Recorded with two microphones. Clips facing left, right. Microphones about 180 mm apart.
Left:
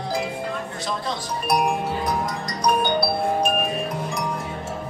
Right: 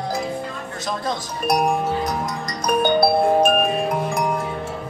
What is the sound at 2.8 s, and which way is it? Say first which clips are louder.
Music: right 5 dB; 50° right (ahead or behind).